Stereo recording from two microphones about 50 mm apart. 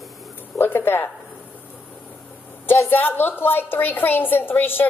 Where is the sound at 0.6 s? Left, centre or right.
Left.